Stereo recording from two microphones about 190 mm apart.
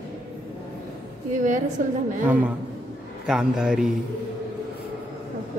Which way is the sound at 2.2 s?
10° right (ahead or behind).